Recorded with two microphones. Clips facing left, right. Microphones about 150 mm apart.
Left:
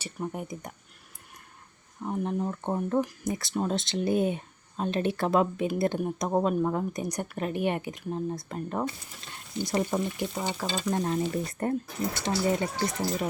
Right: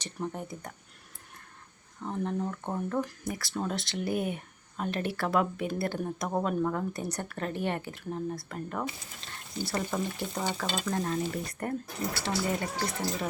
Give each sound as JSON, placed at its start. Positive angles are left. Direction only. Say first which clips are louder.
{"t": 0.0, "sound": "speech", "louder": "left 1 dB", "side_deg": 10}
{"t": 2.0, "sound": "speech", "louder": "left 2 dB", "side_deg": 15}